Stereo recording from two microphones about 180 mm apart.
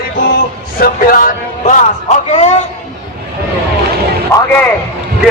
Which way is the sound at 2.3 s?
35° left (ahead or behind).